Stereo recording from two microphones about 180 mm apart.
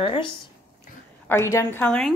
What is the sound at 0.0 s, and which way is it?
Speech, 30° left (ahead or behind).